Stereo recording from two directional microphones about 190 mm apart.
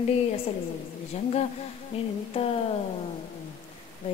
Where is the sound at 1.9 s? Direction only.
30° left (ahead or behind).